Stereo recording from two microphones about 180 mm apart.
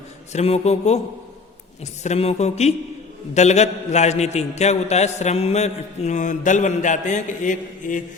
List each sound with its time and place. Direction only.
0.3 s a man's voice: 35° left (ahead or behind)